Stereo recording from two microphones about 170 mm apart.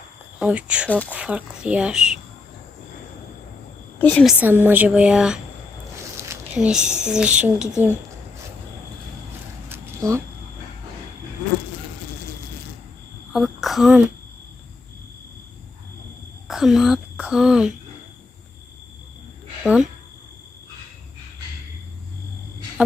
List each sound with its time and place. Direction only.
0.3 s a woman's voice: 5° right (ahead or behind)
3.9 s a woman's voice: 10° left (ahead or behind)
4.3 s a woman's voice: 10° right (ahead or behind)
6.1 s a sound: 15° right (ahead or behind)
6.6 s a woman's voice: 5° right (ahead or behind)
9.6 s a sound: 15° right (ahead or behind)
13.3 s a sound: centre (ahead or behind)
16.5 s speech: centre (ahead or behind)
19.6 s a woman's voice: centre (ahead or behind)